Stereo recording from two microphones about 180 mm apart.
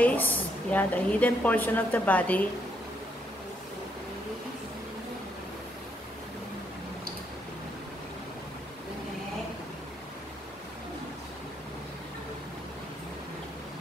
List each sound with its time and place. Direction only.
0.0 s a woman's voice: 10° left (ahead or behind)